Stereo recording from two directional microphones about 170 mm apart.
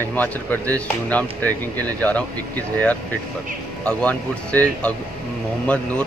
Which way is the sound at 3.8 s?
5° left (ahead or behind).